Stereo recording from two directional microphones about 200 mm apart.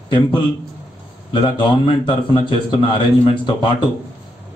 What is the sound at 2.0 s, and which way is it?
Speech, 25° left (ahead or behind).